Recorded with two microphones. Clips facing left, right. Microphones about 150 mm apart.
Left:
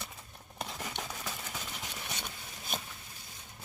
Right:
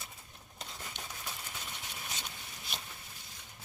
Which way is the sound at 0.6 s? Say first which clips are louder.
Left 7 dB; 80° left.